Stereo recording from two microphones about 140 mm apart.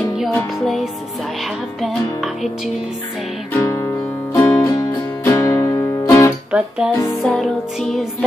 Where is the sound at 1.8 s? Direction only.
Centre (ahead or behind).